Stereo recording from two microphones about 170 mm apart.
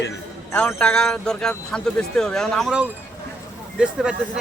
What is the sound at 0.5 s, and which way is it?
Speech, 5° left (ahead or behind).